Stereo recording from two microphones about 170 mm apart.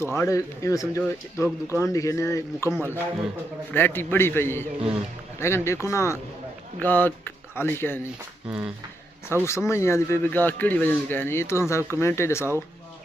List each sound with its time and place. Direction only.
0.0 s speech: 15° left (ahead or behind)
2.7 s a man's voice: 15° right (ahead or behind)
3.7 s speech: 10° left (ahead or behind)
8.5 s a man's voice: 10° right (ahead or behind)
9.5 s speech: 15° left (ahead or behind)